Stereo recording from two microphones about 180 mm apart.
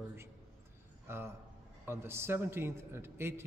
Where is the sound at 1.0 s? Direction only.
15° right (ahead or behind).